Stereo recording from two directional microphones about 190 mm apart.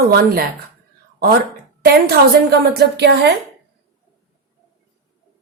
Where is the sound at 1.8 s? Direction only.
55° right (ahead or behind).